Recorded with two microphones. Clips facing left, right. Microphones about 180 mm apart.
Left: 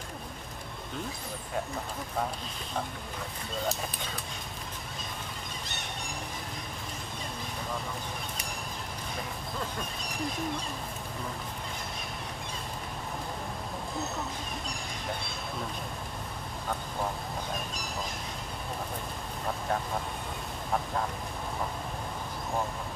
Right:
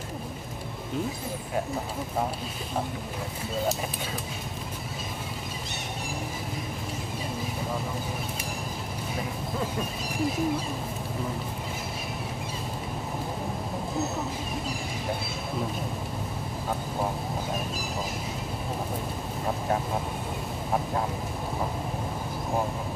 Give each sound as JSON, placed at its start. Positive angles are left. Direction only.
{"t": 9.1, "sound": "speech", "side_deg": -5}
{"t": 19.4, "sound": "speech", "side_deg": -15}